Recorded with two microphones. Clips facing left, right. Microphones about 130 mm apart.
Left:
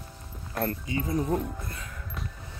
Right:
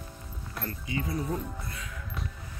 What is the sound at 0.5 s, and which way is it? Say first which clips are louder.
Speech: left 5 dB; 45° left (ahead or behind).